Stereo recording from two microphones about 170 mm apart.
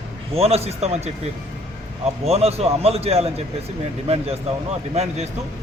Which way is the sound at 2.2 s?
35° right (ahead or behind).